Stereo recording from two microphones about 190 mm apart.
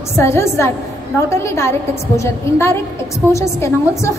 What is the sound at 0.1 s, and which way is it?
A woman's voice, 15° left (ahead or behind).